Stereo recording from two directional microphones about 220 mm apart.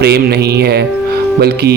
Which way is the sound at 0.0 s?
45° right (ahead or behind).